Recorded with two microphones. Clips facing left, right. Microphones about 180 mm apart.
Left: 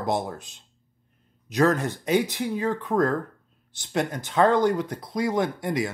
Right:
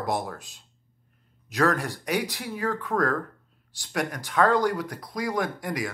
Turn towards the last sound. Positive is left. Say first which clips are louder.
# left 4 dB
turn(degrees=25)  # may be behind; listen again after turning